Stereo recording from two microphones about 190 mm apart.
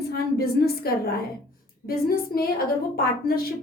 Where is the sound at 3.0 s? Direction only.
50° left (ahead or behind).